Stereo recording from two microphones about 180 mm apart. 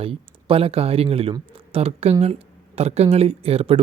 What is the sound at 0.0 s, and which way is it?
Speech, 30° right (ahead or behind).